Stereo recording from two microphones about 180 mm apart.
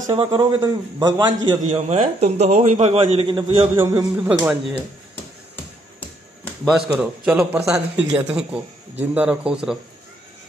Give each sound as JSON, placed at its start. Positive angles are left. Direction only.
{"t": 0.1, "sound": "a man's voice", "side_deg": -30}
{"t": 1.7, "sound": "a man's voice", "side_deg": -40}
{"t": 3.3, "sound": "a man's voice", "side_deg": -25}
{"t": 3.7, "sound": "speech", "side_deg": -15}
{"t": 5.9, "sound": "music", "side_deg": 10}
{"t": 6.7, "sound": "a man's voice", "side_deg": 0}